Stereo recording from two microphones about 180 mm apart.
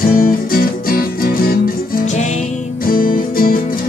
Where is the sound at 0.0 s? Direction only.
50° left (ahead or behind).